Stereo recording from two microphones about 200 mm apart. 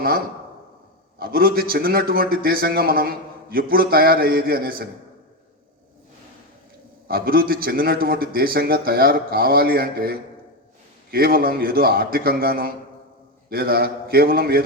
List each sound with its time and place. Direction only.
1.2 s a man's voice: 50° right (ahead or behind)
7.1 s a man's voice: 50° right (ahead or behind)